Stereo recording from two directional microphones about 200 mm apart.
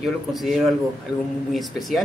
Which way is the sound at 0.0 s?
Centre (ahead or behind).